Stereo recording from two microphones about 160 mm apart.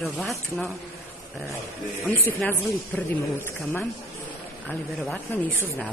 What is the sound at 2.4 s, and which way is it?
Speech, 15° left (ahead or behind).